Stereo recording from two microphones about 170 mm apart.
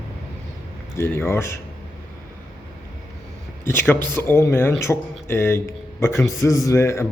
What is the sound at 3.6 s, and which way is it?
A man's voice, 15° left (ahead or behind).